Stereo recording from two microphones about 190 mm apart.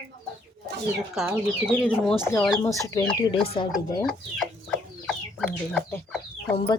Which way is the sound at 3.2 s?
30° left (ahead or behind).